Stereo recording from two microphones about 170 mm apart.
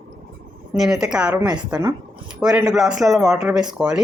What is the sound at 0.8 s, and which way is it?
Speech, centre (ahead or behind).